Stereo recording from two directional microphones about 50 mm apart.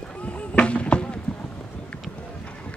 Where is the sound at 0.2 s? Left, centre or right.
Left.